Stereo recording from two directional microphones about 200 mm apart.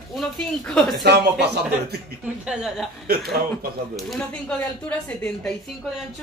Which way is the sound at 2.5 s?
5° right (ahead or behind).